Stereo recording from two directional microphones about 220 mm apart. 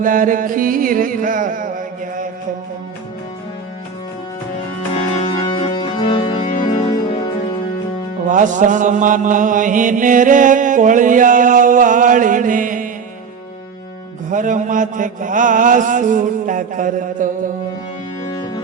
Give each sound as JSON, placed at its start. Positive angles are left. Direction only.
{"t": 0.0, "sound": "mantra", "side_deg": -35}
{"t": 5.1, "sound": "music", "side_deg": 25}
{"t": 8.3, "sound": "mantra", "side_deg": -35}
{"t": 14.3, "sound": "mantra", "side_deg": -35}